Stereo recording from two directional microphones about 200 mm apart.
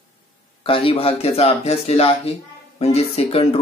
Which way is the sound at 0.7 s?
25° left (ahead or behind).